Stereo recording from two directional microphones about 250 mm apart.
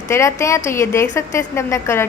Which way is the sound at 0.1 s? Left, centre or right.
Centre.